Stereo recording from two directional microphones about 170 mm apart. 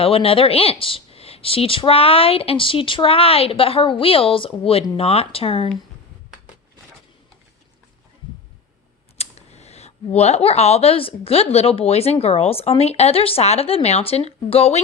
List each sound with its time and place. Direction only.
0.0 s speech: 35° left (ahead or behind)
9.1 s speech: 40° left (ahead or behind)